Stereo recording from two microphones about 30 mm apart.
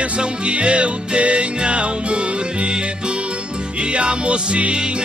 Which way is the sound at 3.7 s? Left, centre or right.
Right.